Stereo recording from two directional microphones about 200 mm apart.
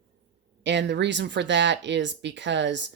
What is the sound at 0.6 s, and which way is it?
Speech, 60° right (ahead or behind).